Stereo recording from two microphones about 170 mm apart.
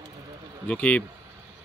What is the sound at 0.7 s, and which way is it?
Speech, 10° left (ahead or behind).